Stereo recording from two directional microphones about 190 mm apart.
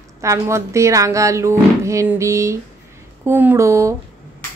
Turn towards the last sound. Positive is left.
turn(degrees=-15)  # may be behind; listen again after turning